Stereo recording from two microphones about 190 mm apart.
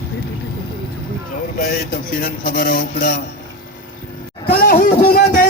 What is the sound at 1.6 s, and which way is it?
Speech, 50° left (ahead or behind).